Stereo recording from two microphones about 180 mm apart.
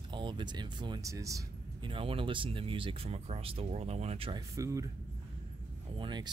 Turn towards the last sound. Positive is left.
turn(degrees=-25)  # may be behind; listen again after turning